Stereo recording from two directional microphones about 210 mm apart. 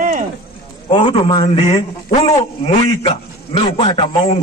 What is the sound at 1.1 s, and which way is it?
A man's voice, 25° left (ahead or behind).